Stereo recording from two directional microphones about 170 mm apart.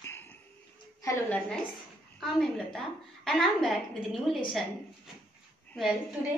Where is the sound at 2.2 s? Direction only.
Centre (ahead or behind).